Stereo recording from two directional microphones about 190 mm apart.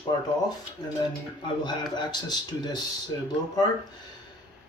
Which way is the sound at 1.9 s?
20° left (ahead or behind).